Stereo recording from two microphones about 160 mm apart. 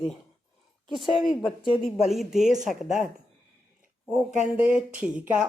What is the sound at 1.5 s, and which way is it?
Speech, 30° left (ahead or behind).